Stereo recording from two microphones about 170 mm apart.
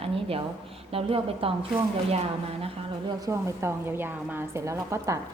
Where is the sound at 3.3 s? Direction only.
15° right (ahead or behind).